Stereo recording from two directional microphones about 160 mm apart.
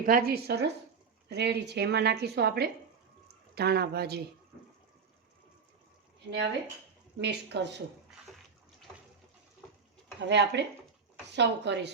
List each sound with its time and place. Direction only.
0.0 s a woman's voice: 65° right (ahead or behind); by 4.2 s 85° right
7.2 s a woman's voice: 90° right
10.2 s a woman's voice: 90° right